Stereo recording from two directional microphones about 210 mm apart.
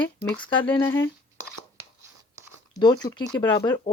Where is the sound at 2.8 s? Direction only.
20° left (ahead or behind).